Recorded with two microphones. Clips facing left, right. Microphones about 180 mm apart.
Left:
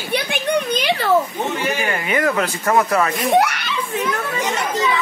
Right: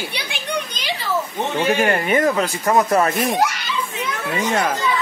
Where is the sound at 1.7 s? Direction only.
50° right (ahead or behind).